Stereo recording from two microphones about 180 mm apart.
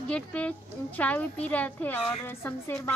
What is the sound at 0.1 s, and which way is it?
A woman's voice, 5° left (ahead or behind).